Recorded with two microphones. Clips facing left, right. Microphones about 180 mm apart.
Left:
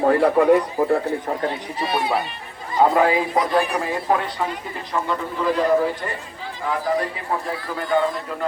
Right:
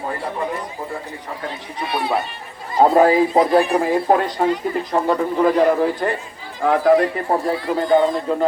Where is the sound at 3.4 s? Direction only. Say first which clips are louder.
Right 6 dB; 30° right (ahead or behind).